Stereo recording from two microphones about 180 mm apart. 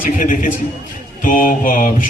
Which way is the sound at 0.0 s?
50° left (ahead or behind).